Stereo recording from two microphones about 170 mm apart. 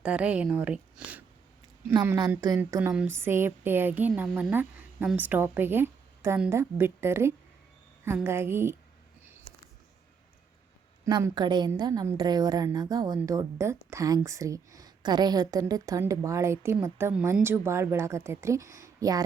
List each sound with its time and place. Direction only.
0.0 s a woman's voice: 5° right (ahead or behind)
1.9 s a woman's voice: 20° right (ahead or behind)
11.0 s a woman's voice: 20° right (ahead or behind)